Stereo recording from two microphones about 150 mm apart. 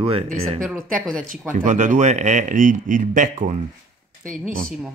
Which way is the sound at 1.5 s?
55° right (ahead or behind).